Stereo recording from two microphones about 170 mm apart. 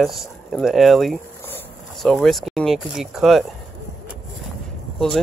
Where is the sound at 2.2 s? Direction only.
Centre (ahead or behind).